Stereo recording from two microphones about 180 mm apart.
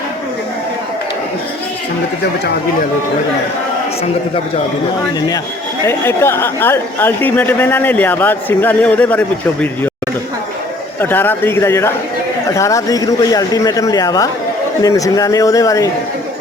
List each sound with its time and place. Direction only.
5.8 s speech: 15° left (ahead or behind)
11.0 s a man's voice: 10° left (ahead or behind)